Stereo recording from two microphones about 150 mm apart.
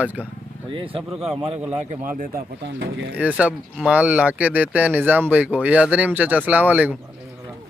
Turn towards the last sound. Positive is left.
turn(degrees=-10)  # may be behind; listen again after turning